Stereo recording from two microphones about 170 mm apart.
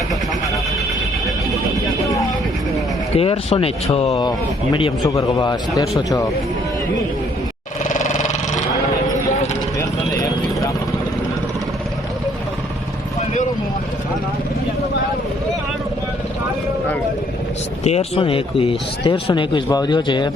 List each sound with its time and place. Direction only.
3.2 s speech: 35° left (ahead or behind)
4.3 s speech: 25° left (ahead or behind)
7.9 s a sound: 45° left (ahead or behind)
9.7 s vehicle: 20° left (ahead or behind)
17.8 s speech: 40° left (ahead or behind)